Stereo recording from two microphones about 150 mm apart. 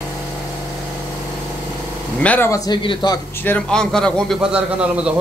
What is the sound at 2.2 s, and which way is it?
Speech, 10° left (ahead or behind).